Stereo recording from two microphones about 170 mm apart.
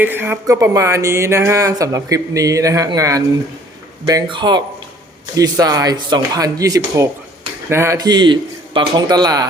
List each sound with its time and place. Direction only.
0.0 s speech: 10° right (ahead or behind)